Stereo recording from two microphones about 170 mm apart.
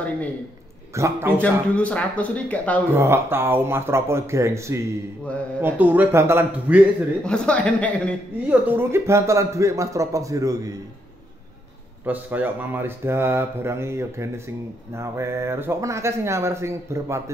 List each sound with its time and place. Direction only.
0.9 s speech: 15° right (ahead or behind)
1.4 s speech: 5° left (ahead or behind)
2.9 s speech: 15° right (ahead or behind)
7.2 s speech: 5° left (ahead or behind)
8.5 s speech: 10° right (ahead or behind)
12.0 s speech: 10° right (ahead or behind)